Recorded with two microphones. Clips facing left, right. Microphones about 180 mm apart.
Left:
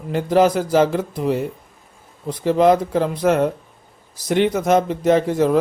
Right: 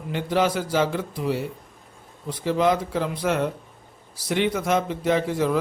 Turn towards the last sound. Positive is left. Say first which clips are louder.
# left 6 dB
turn(degrees=40)  # may be behind; listen again after turning